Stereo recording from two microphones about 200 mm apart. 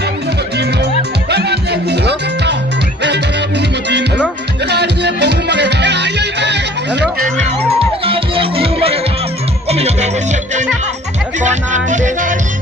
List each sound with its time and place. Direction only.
0.5 s music: 55° right (ahead or behind)
3.6 s music: 60° right (ahead or behind)
7.2 s music: 40° right (ahead or behind)
8.0 s music: 25° right (ahead or behind)
11.3 s music: 35° right (ahead or behind)